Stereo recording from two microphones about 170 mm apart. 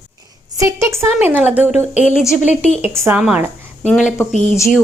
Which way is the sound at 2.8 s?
15° right (ahead or behind).